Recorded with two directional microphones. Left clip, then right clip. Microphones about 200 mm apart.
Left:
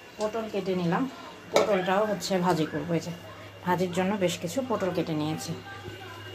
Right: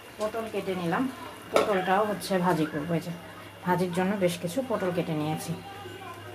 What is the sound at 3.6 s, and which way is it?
Speech, 10° left (ahead or behind).